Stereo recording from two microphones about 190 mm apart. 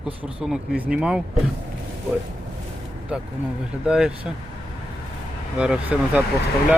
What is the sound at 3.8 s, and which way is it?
Speech, 5° right (ahead or behind).